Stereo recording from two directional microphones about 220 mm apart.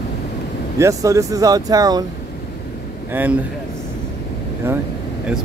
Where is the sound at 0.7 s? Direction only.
15° right (ahead or behind).